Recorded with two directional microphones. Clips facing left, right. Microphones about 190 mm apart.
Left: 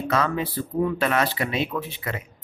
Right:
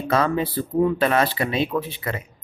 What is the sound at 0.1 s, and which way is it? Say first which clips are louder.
Speech: right 4 dB; 30° right (ahead or behind).